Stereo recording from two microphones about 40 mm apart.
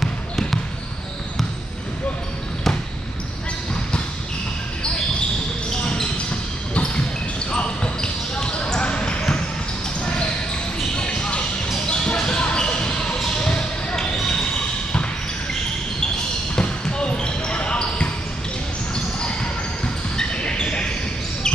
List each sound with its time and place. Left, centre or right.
0.0 s trickle: centre
5.7 s basketball bounce: centre
11.0 s basketball bounce: left
16.5 s basketball bounce: left
20.2 s a sound: left